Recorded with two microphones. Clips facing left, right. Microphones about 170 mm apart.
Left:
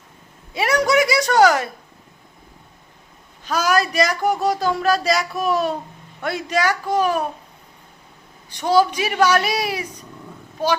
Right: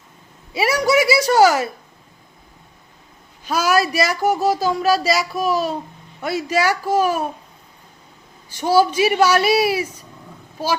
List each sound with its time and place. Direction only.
0.5 s speech: 5° right (ahead or behind)
3.4 s a woman's voice: 10° right (ahead or behind)
8.5 s a woman's voice: 5° right (ahead or behind)